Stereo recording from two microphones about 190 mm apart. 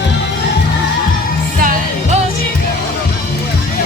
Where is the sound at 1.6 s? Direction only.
45° right (ahead or behind).